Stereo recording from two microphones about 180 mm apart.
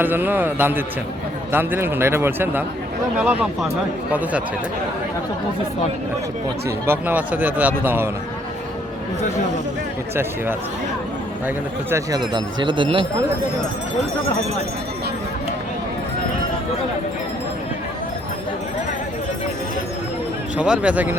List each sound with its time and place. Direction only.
0.0 s speech: 10° right (ahead or behind)
6.7 s speech: 10° right (ahead or behind)
11.4 s speech: 15° right (ahead or behind)
20.6 s speech: 5° right (ahead or behind)